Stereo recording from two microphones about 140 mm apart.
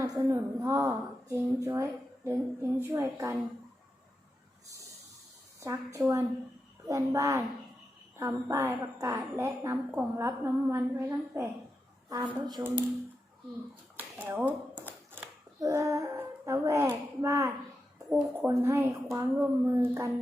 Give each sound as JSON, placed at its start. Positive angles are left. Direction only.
{"t": 0.0, "sound": "a woman's voice", "side_deg": -20}
{"t": 5.5, "sound": "a woman's voice", "side_deg": -25}
{"t": 14.2, "sound": "speech", "side_deg": -15}
{"t": 15.6, "sound": "a woman's voice", "side_deg": -20}